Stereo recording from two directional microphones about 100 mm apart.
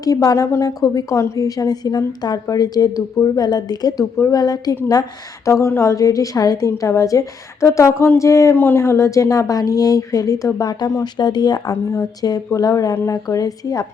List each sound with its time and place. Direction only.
0.0 s a woman's voice: 40° left (ahead or behind)
5.5 s a woman's voice: 30° left (ahead or behind)